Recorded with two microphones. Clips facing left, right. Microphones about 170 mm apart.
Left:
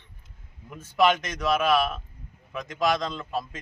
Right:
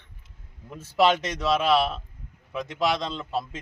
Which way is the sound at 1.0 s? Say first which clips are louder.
Right 1 dB; 30° right (ahead or behind).